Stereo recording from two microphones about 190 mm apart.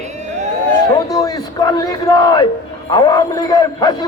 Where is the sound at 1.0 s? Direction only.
20° left (ahead or behind).